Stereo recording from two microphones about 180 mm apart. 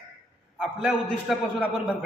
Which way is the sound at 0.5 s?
5° right (ahead or behind).